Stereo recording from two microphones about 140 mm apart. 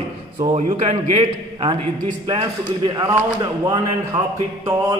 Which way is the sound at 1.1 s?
35° right (ahead or behind).